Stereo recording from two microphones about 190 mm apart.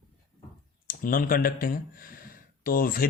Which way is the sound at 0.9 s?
45° left (ahead or behind).